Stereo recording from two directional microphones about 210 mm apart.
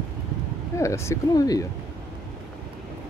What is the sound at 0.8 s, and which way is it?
Speech, 15° left (ahead or behind).